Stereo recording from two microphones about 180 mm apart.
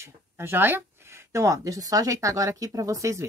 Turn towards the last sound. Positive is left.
turn(degrees=-15)  # may be behind; listen again after turning